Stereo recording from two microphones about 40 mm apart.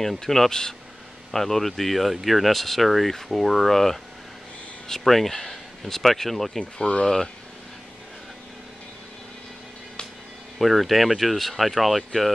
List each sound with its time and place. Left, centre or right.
0.0 s speech: centre
6.8 s speech: left
10.6 s speech: centre